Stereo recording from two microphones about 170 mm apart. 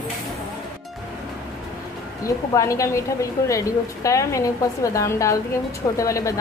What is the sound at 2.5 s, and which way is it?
A woman's voice, 20° left (ahead or behind).